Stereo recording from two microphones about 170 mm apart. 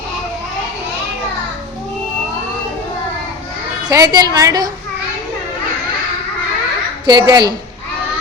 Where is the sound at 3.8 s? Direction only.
20° right (ahead or behind).